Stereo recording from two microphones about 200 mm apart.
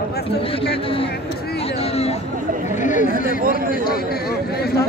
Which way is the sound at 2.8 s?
40° left (ahead or behind).